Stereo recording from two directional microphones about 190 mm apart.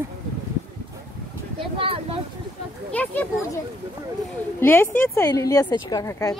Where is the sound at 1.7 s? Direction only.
30° right (ahead or behind).